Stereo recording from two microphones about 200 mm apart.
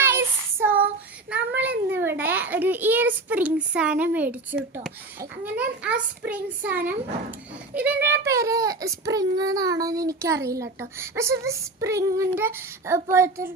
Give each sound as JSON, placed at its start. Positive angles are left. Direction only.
{"t": 0.6, "sound": "child singing", "side_deg": -10}
{"t": 1.3, "sound": "a child's voice", "side_deg": -10}